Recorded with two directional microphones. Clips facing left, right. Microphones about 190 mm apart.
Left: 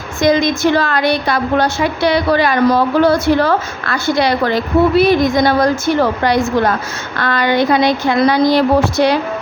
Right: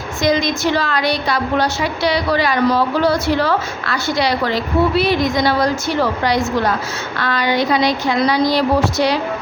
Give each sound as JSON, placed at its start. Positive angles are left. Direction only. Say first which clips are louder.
{"t": 0.2, "sound": "a woman's voice", "louder": "left 4 dB", "side_deg": 55}